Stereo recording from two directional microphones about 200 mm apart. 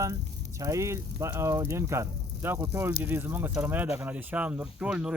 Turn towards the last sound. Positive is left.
turn(degrees=-5)  # may be behind; listen again after turning